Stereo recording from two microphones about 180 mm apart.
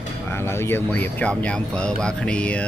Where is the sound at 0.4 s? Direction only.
15° left (ahead or behind).